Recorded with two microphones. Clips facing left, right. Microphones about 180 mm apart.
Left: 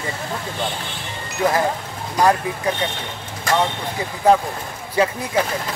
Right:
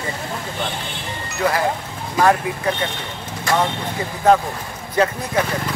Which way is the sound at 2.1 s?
15° left (ahead or behind).